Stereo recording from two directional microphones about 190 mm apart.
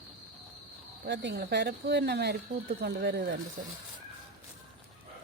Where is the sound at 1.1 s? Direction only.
60° right (ahead or behind).